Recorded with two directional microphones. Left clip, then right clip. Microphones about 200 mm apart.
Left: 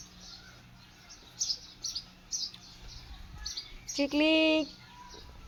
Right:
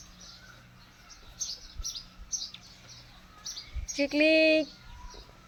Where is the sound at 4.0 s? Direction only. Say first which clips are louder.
Right 3 dB; 10° right (ahead or behind).